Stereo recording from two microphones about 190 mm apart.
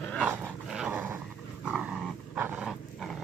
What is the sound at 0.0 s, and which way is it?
Dog, 5° left (ahead or behind).